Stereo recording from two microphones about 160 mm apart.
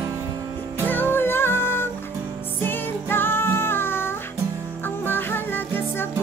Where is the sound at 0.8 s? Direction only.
10° left (ahead or behind).